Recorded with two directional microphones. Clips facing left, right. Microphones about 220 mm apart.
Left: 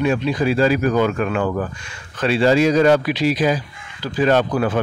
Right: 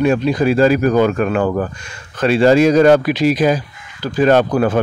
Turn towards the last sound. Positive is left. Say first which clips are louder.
# right 4 dB
turn(degrees=-45)  # may be behind; listen again after turning